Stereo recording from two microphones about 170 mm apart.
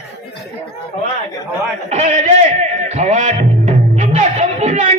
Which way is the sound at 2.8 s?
40° right (ahead or behind).